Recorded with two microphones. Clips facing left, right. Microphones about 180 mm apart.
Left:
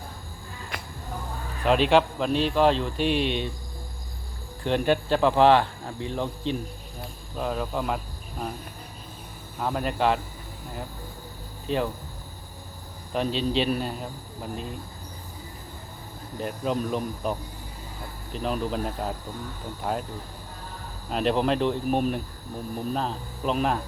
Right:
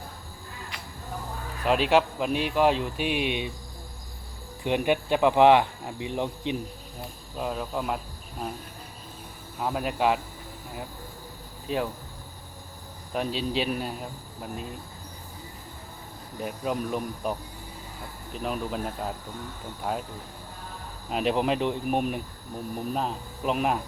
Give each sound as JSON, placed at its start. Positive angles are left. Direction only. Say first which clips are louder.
{"t": 0.7, "sound": "a sound", "louder": "left 4 dB", "side_deg": 50}
{"t": 1.6, "sound": "speech", "louder": "left 2 dB", "side_deg": -5}
{"t": 4.6, "sound": "speech", "louder": "left 1 dB", "side_deg": -10}
{"t": 7.3, "sound": "speech", "louder": "left 2 dB", "side_deg": 0}
{"t": 9.6, "sound": "speech", "louder": "left 1 dB", "side_deg": -5}
{"t": 11.7, "sound": "speech", "louder": "left 2 dB", "side_deg": -5}
{"t": 13.1, "sound": "speech", "louder": "left 3 dB", "side_deg": -5}
{"t": 16.4, "sound": "speech", "louder": "left 2 dB", "side_deg": -5}
{"t": 21.1, "sound": "speech", "louder": "left 1 dB", "side_deg": -5}